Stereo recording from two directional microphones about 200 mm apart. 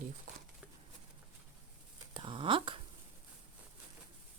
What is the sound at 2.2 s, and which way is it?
Speech, 25° right (ahead or behind).